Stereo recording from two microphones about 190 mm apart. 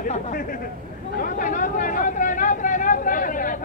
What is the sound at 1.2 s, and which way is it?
Vehicle, 45° left (ahead or behind).